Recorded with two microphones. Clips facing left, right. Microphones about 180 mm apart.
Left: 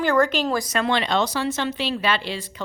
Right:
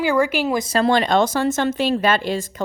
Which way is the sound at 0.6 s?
30° right (ahead or behind).